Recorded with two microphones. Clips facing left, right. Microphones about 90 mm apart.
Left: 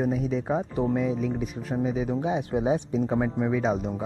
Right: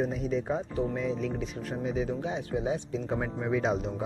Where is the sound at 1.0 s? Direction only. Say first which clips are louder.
Left 4 dB; 5° left (ahead or behind).